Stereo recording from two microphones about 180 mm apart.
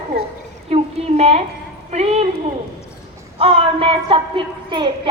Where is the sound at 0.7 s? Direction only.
35° right (ahead or behind).